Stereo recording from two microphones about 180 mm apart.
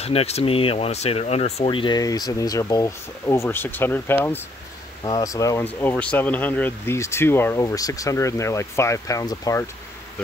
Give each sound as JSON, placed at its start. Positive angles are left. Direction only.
{"t": 0.0, "sound": "speech", "side_deg": 35}